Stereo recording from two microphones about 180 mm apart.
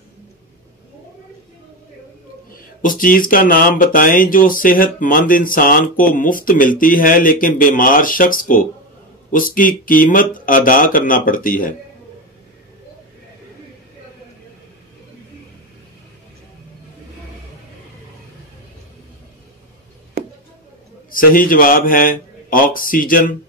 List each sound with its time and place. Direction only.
2.5 s speech: 50° left (ahead or behind)
21.1 s speech: 50° left (ahead or behind)